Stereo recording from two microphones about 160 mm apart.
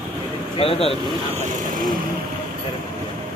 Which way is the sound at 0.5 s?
35° left (ahead or behind).